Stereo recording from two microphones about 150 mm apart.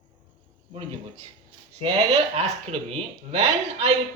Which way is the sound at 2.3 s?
45° right (ahead or behind).